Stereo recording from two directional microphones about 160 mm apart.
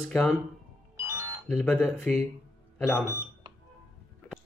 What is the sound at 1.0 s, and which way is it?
Music, 20° right (ahead or behind).